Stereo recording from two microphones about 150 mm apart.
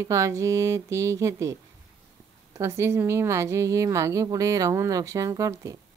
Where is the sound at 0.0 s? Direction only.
20° right (ahead or behind).